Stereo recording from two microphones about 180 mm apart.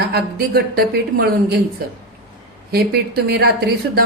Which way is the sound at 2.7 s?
60° right (ahead or behind).